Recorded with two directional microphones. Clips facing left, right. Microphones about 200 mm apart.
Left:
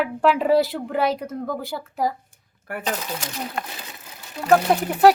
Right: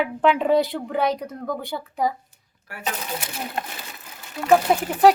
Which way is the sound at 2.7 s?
55° left (ahead or behind).